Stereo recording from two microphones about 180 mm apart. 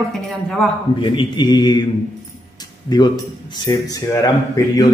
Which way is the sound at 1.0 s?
25° left (ahead or behind).